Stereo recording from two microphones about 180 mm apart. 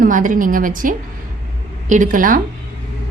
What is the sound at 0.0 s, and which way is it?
A woman's voice, 45° right (ahead or behind).